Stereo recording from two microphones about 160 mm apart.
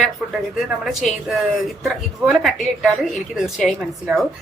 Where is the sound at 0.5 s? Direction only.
Centre (ahead or behind).